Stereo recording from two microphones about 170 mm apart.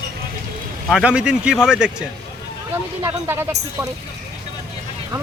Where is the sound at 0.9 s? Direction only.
5° right (ahead or behind).